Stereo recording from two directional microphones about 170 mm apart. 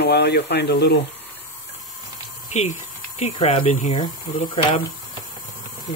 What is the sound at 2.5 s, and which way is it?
Speech, 45° left (ahead or behind).